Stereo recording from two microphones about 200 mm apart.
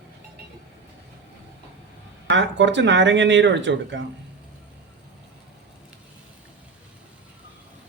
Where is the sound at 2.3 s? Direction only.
65° right (ahead or behind).